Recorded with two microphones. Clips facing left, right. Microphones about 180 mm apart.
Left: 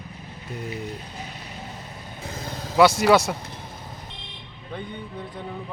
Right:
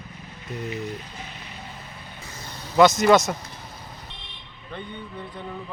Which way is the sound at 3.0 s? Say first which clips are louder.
Right 1 dB; 10° left (ahead or behind).